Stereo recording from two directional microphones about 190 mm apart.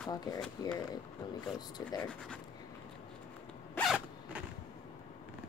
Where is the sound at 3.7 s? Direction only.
Centre (ahead or behind).